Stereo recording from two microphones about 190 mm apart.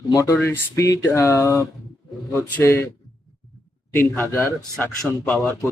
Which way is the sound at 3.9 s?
15° left (ahead or behind).